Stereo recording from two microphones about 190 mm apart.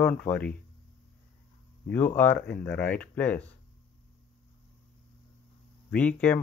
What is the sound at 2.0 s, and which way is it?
Speech, 10° left (ahead or behind).